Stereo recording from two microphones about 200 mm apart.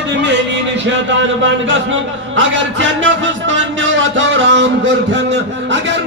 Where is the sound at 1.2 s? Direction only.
65° right (ahead or behind).